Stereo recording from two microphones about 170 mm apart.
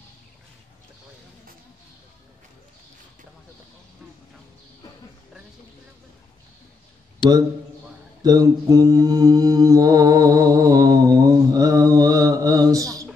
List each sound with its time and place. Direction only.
7.2 s a man's voice: 30° left (ahead or behind)
8.2 s mantra: 20° right (ahead or behind)